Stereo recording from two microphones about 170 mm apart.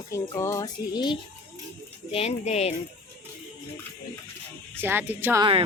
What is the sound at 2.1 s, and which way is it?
Speech, 35° left (ahead or behind).